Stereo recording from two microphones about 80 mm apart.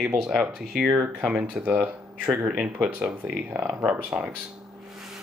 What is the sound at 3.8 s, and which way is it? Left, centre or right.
Speech, centre.